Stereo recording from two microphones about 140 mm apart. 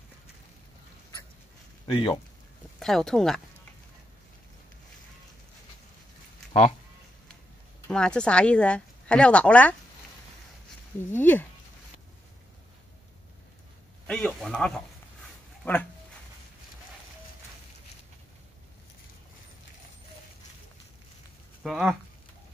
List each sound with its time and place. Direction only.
1.9 s speech: 40° left (ahead or behind)
2.8 s a man's voice: 5° left (ahead or behind)
7.9 s a woman's voice: 5° left (ahead or behind)
11.1 s a woman's voice: 15° left (ahead or behind)
14.0 s a man's voice: 5° left (ahead or behind)
21.6 s a man's voice: centre (ahead or behind)